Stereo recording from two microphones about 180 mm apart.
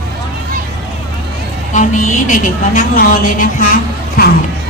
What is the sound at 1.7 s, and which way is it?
A woman's voice, 45° left (ahead or behind).